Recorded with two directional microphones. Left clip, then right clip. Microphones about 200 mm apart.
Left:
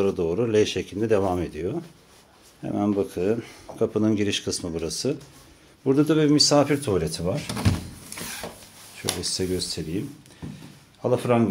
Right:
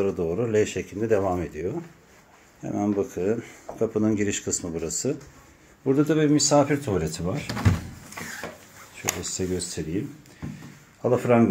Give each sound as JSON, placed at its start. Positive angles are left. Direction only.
{"t": 0.0, "sound": "speech", "side_deg": 10}
{"t": 9.2, "sound": "speech", "side_deg": 20}
{"t": 11.0, "sound": "speech", "side_deg": 0}